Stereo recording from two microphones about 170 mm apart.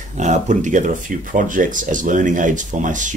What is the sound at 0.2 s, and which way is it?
Speech, 45° right (ahead or behind).